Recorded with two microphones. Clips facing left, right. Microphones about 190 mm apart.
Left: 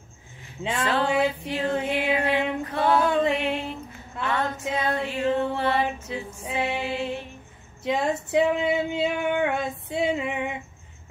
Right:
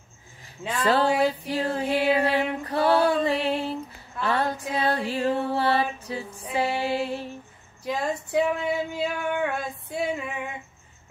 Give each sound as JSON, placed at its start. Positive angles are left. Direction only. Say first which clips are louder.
{"t": 0.8, "sound": "a sound", "louder": "right 2 dB", "side_deg": -35}
{"t": 4.2, "sound": "music", "louder": "right 1 dB", "side_deg": -35}
{"t": 7.8, "sound": "female singing", "louder": "left 3 dB", "side_deg": 20}